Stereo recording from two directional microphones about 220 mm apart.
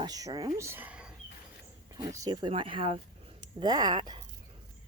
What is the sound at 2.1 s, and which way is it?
Speech, 20° right (ahead or behind).